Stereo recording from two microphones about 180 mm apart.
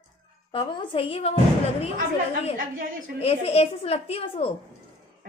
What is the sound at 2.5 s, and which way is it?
Speech, 55° right (ahead or behind).